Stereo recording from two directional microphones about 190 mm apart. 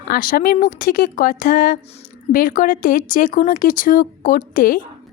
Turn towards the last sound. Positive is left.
turn(degrees=50)  # may be behind; listen again after turning